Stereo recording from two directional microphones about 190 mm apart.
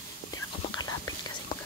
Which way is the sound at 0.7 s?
20° left (ahead or behind).